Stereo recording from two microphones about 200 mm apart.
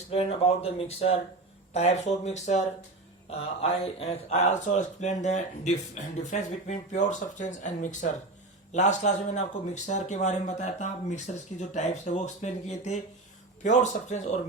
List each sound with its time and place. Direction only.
0.1 s speech: 30° left (ahead or behind)